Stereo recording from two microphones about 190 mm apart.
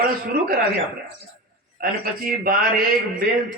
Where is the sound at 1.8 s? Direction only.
50° right (ahead or behind).